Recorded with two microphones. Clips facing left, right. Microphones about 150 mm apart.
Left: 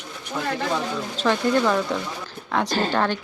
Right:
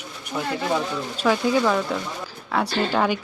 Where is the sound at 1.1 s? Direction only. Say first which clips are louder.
Even; 10° right (ahead or behind).